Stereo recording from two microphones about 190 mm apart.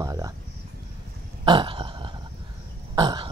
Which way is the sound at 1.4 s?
25° right (ahead or behind).